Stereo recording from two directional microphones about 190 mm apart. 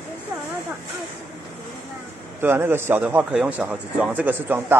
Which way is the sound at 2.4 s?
10° right (ahead or behind).